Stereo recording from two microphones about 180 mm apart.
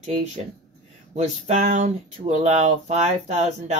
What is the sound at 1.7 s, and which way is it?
Speech, 40° right (ahead or behind).